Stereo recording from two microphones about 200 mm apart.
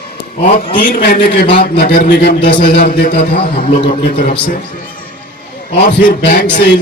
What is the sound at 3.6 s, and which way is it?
Speech, 30° left (ahead or behind).